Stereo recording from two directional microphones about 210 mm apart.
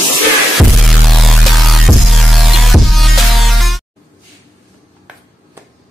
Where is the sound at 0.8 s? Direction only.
Centre (ahead or behind).